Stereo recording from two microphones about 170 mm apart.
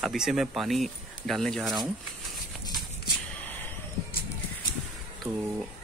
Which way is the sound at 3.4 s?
10° left (ahead or behind).